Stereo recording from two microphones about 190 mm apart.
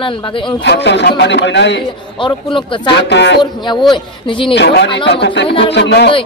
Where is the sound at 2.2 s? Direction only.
25° left (ahead or behind).